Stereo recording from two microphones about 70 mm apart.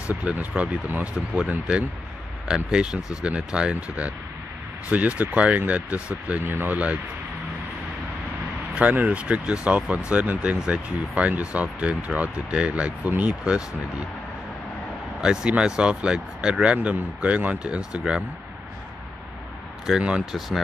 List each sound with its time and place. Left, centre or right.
0.1 s speech: right
1.5 s speech: centre
8.7 s speech: right
15.1 s speech: centre
19.9 s speech: centre
20.3 s speech: centre